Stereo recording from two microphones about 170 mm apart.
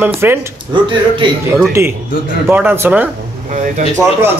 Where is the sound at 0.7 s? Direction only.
30° right (ahead or behind).